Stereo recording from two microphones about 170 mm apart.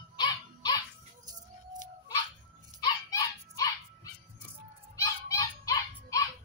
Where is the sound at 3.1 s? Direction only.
20° left (ahead or behind).